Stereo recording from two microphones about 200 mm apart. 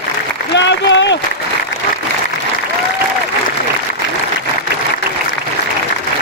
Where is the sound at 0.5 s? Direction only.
60° left (ahead or behind).